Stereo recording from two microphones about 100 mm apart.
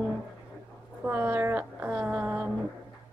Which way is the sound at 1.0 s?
15° right (ahead or behind).